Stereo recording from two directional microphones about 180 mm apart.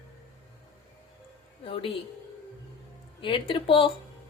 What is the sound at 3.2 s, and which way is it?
Speech, 30° left (ahead or behind).